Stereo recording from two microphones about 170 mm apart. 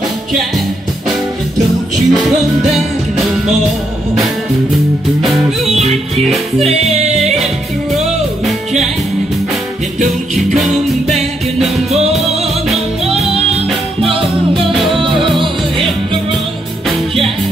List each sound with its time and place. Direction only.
2.0 s music: centre (ahead or behind)
5.2 s music: centre (ahead or behind)
10.0 s music: centre (ahead or behind)
14.7 s music: centre (ahead or behind)